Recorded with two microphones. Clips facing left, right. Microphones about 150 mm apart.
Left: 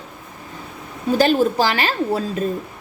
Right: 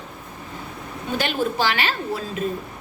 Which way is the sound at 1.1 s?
40° left (ahead or behind).